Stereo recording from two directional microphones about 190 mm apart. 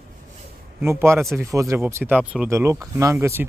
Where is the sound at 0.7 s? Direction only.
15° right (ahead or behind).